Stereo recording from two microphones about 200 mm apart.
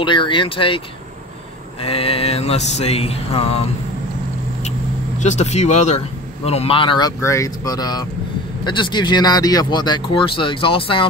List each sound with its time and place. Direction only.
0.0 s speech: 25° left (ahead or behind)
5.2 s speech: 35° left (ahead or behind)